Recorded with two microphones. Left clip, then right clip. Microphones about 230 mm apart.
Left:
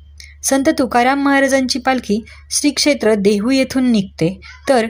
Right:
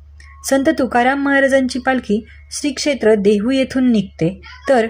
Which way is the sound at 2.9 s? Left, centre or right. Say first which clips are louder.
Right 1 dB; left.